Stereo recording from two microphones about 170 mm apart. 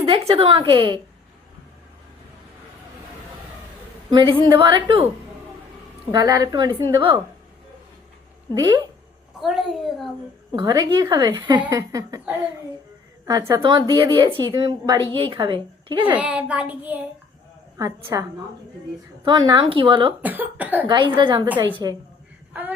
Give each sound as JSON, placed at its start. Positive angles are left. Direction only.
{"t": 0.0, "sound": "a woman's voice", "side_deg": -35}
{"t": 4.1, "sound": "a woman's voice", "side_deg": -30}
{"t": 6.1, "sound": "a woman's voice", "side_deg": -20}
{"t": 8.5, "sound": "a woman's voice", "side_deg": -25}
{"t": 9.4, "sound": "a woman's voice", "side_deg": 0}
{"t": 10.5, "sound": "a woman's voice", "side_deg": -25}
{"t": 13.2, "sound": "a woman's voice", "side_deg": -20}
{"t": 16.0, "sound": "a child's voice", "side_deg": -10}
{"t": 17.7, "sound": "a woman's voice", "side_deg": -20}
{"t": 20.2, "sound": "a child's voice", "side_deg": -10}
{"t": 20.8, "sound": "a woman's voice", "side_deg": -25}